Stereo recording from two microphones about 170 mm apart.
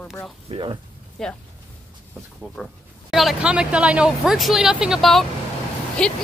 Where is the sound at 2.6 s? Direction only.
5° left (ahead or behind).